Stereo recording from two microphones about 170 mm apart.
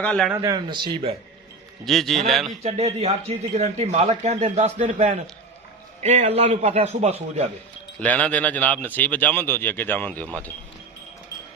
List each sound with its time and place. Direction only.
0.0 s speech: 5° left (ahead or behind)
0.3 s speech: 25° right (ahead or behind)
1.8 s a man's voice: centre (ahead or behind)
2.6 s speech: 35° right (ahead or behind)
8.0 s speech: 10° left (ahead or behind)